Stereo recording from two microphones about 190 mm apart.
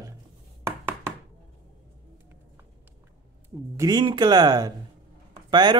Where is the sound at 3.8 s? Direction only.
20° right (ahead or behind).